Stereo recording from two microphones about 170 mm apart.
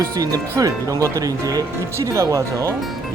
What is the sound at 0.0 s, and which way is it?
Speech, 20° right (ahead or behind).